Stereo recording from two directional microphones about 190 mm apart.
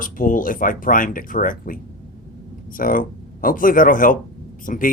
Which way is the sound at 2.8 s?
45° left (ahead or behind).